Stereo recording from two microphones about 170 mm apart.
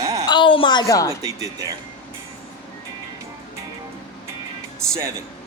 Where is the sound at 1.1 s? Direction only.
20° right (ahead or behind).